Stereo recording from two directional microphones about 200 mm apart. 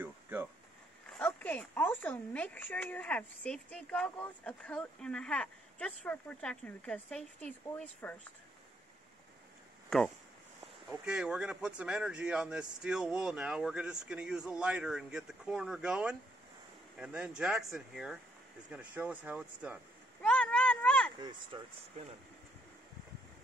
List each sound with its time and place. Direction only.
0.0 s a sound: 10° right (ahead or behind)
1.1 s speech: 5° left (ahead or behind)
9.8 s speech: centre (ahead or behind)
20.2 s cat: 5° left (ahead or behind)
21.2 s speech: 20° right (ahead or behind)